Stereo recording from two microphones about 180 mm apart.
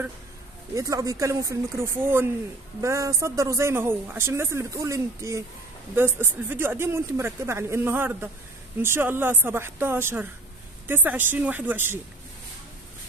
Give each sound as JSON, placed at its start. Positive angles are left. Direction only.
{"t": 0.7, "sound": "a man's voice", "side_deg": -20}